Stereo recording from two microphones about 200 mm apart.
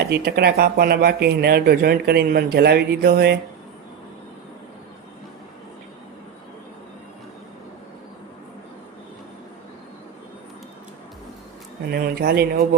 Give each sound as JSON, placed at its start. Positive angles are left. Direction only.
{"t": 0.0, "sound": "speech", "side_deg": -55}
{"t": 11.9, "sound": "speech", "side_deg": -50}